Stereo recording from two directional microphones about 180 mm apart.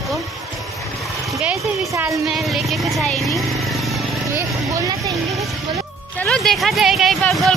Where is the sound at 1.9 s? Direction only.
15° right (ahead or behind).